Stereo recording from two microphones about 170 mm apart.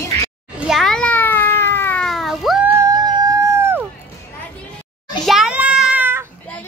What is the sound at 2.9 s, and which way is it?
Howl, 20° right (ahead or behind).